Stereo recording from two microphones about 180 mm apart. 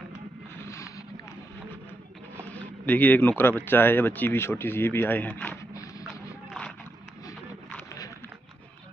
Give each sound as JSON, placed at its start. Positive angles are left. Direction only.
{"t": 0.6, "sound": "vehicle", "side_deg": 15}
{"t": 2.6, "sound": "speech", "side_deg": 10}
{"t": 7.7, "sound": "a sound", "side_deg": 15}